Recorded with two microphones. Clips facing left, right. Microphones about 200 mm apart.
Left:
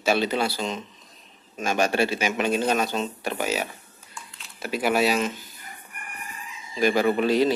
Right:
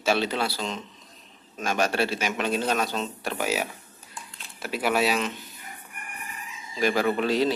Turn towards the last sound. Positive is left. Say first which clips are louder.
# left 3 dB
turn(degrees=0)  # may be behind; listen again after turning